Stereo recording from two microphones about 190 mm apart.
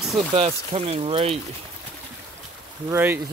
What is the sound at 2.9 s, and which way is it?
Speech, 15° right (ahead or behind).